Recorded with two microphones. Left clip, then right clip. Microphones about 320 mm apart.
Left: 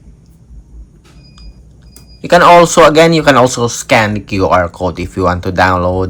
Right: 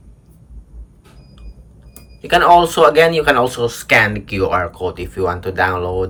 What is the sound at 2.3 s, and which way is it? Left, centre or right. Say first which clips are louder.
Speech: left 5 dB; centre.